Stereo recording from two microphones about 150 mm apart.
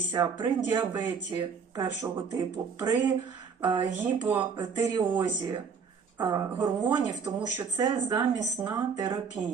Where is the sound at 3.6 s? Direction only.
25° right (ahead or behind).